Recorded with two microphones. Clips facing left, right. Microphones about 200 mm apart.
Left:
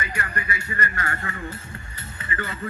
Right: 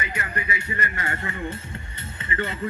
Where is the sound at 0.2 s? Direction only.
20° right (ahead or behind).